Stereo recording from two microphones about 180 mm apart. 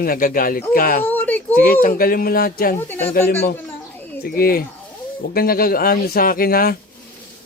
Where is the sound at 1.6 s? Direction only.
55° left (ahead or behind).